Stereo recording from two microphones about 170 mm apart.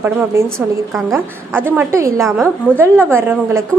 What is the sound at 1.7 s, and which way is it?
A woman's voice, 15° right (ahead or behind).